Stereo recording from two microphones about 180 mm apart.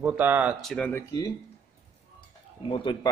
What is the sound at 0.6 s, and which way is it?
Speech, 5° left (ahead or behind).